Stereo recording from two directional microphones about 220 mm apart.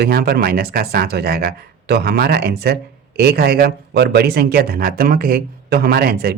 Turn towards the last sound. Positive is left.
turn(degrees=-45)  # may be behind; listen again after turning